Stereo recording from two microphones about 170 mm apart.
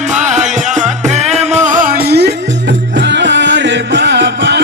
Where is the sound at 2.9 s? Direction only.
90° right.